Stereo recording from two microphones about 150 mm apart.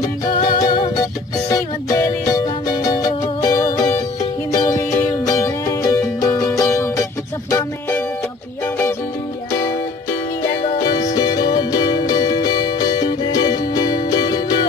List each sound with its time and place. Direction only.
0.4 s music: 25° left (ahead or behind)
10.9 s music: 25° left (ahead or behind)